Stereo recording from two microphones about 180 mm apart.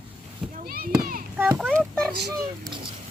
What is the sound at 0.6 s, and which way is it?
Speech, 55° right (ahead or behind).